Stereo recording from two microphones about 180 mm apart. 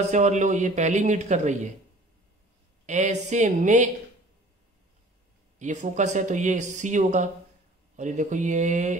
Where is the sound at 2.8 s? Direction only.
40° right (ahead or behind).